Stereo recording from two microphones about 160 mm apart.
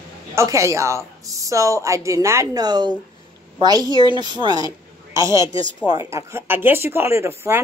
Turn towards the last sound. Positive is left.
turn(degrees=-15)  # may be behind; listen again after turning